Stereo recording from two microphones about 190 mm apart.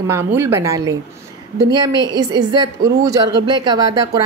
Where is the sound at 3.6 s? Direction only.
20° right (ahead or behind).